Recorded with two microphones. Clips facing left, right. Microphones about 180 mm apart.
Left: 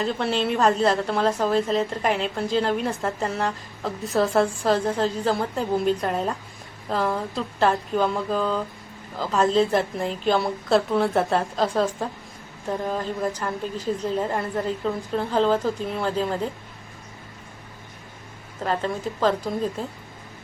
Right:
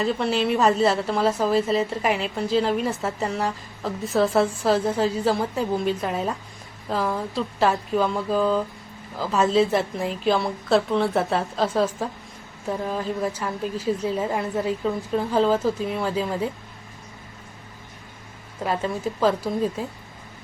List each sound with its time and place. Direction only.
0.0 s a woman's voice: centre (ahead or behind)
18.6 s a woman's voice: 10° right (ahead or behind)